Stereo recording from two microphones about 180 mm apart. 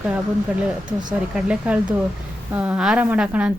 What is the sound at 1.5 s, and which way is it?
A woman's voice, 5° right (ahead or behind).